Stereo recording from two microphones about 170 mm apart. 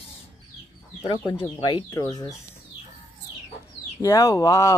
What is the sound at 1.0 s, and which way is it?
Speech, 30° left (ahead or behind).